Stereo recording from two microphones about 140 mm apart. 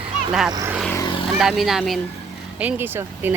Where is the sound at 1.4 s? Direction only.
Centre (ahead or behind).